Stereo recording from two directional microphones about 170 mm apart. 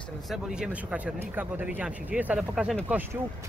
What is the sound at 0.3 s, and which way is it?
Speech, 5° right (ahead or behind).